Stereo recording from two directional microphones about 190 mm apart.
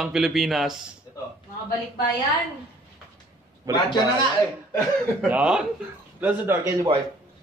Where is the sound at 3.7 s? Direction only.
20° right (ahead or behind).